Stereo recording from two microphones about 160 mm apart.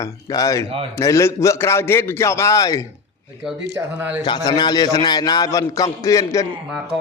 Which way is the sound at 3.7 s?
10° right (ahead or behind).